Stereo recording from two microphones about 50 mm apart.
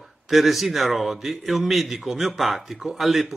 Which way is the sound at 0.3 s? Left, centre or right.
Centre.